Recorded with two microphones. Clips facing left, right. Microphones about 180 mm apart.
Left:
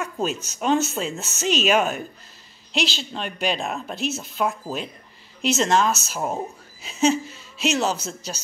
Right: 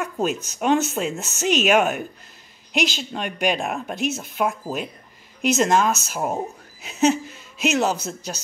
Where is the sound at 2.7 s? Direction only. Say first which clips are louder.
Right 2 dB; 50° right (ahead or behind).